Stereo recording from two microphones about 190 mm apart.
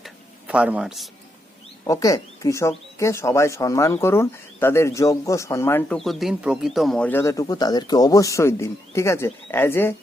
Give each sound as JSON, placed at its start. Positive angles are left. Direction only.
{"t": 0.0, "sound": "a sound", "side_deg": -5}
{"t": 1.8, "sound": "speech", "side_deg": 20}
{"t": 6.0, "sound": "speech", "side_deg": 0}